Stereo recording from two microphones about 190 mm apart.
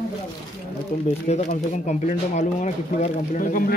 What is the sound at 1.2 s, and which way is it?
Speech, 40° left (ahead or behind).